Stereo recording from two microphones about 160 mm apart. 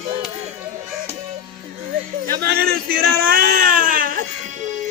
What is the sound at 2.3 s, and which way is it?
Speech, 75° right (ahead or behind).